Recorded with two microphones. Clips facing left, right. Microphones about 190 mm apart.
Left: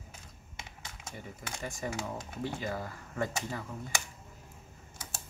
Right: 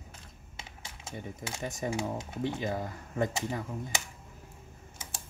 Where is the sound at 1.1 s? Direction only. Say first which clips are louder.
Right 5 dB; 20° right (ahead or behind).